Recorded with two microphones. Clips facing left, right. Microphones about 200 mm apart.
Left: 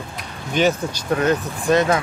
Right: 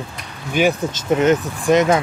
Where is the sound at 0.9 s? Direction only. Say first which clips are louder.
Right 4 dB; 20° right (ahead or behind).